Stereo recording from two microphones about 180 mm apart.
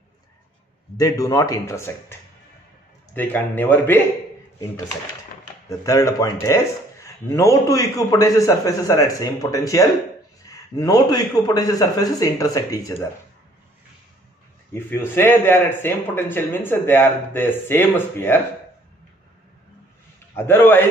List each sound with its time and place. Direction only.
0.9 s a man's voice: 20° left (ahead or behind)
3.2 s speech: 10° left (ahead or behind)
5.7 s a man's voice: 20° left (ahead or behind)
14.7 s speech: 15° left (ahead or behind)
20.3 s speech: 10° left (ahead or behind)